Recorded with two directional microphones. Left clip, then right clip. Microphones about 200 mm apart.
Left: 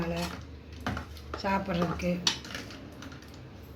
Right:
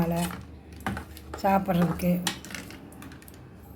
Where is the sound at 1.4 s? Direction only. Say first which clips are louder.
Right 6 dB; 50° right (ahead or behind).